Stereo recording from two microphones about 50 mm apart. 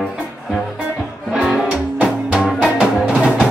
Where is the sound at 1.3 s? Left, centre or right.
Centre.